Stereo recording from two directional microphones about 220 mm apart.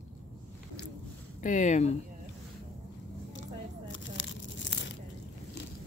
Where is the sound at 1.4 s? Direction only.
35° left (ahead or behind).